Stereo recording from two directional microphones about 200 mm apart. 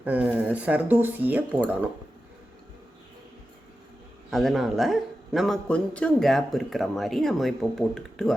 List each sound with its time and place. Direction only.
0.0 s speech: 10° right (ahead or behind)
4.3 s a man's voice: centre (ahead or behind)